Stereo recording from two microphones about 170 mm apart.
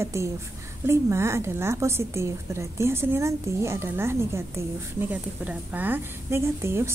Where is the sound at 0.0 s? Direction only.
15° right (ahead or behind).